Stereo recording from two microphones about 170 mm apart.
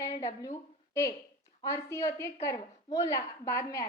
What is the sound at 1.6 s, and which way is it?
A woman's voice, 15° left (ahead or behind).